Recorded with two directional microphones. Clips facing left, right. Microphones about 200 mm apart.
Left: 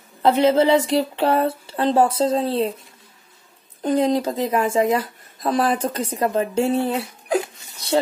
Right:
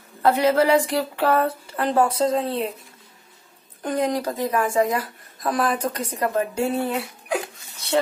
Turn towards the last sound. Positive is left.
turn(degrees=35)  # may be behind; listen again after turning